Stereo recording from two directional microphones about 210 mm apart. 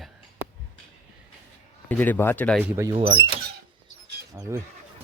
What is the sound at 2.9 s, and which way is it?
Speech, 25° right (ahead or behind).